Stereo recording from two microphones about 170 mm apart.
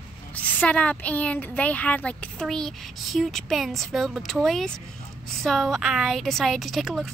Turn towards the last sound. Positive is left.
turn(degrees=0)  # may be behind; listen again after turning